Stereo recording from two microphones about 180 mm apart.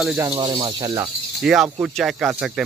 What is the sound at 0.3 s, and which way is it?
Cricket, 20° right (ahead or behind).